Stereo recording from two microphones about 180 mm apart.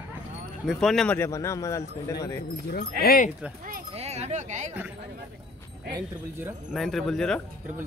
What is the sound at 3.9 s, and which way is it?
Speech, 35° right (ahead or behind).